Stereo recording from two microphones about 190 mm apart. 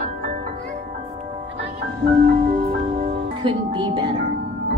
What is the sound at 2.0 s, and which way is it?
Music, 50° right (ahead or behind).